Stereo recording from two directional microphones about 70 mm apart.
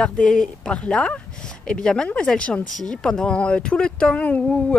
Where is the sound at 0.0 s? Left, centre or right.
Centre.